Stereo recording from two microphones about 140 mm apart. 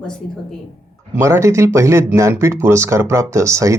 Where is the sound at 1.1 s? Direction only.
20° right (ahead or behind).